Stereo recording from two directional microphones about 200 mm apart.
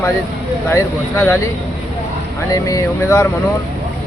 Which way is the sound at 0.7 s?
10° left (ahead or behind).